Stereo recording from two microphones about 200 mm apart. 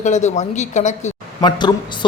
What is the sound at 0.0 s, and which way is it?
Speech, 35° left (ahead or behind).